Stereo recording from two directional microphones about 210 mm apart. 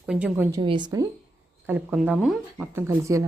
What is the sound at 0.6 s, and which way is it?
A woman's voice, 20° right (ahead or behind).